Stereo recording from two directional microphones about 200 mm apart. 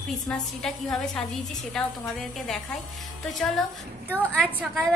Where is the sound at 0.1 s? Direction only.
Centre (ahead or behind).